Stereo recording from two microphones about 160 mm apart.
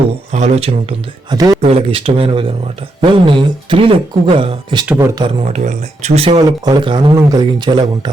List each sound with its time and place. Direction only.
0.3 s speech: 40° right (ahead or behind)
5.2 s speech: 45° right (ahead or behind)
6.7 s speech: 30° right (ahead or behind)